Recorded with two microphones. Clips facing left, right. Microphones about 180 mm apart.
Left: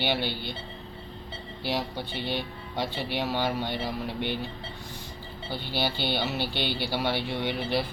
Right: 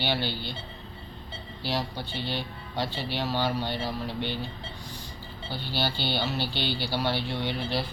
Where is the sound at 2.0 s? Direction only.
55° left (ahead or behind).